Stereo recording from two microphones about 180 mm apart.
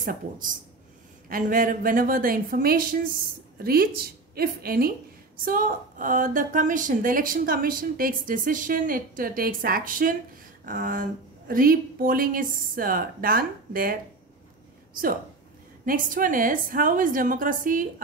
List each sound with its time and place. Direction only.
0.0 s a woman's voice: 50° right (ahead or behind)
15.8 s a woman's voice: 50° right (ahead or behind)